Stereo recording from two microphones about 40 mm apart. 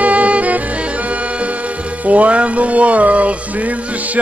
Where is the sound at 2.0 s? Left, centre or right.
Right.